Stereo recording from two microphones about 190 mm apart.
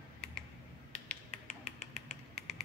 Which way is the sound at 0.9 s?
40° left (ahead or behind).